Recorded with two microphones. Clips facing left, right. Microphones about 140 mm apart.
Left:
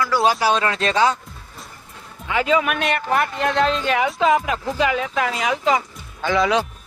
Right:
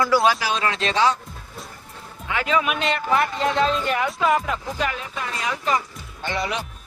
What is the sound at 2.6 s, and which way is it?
Speech, 55° left (ahead or behind).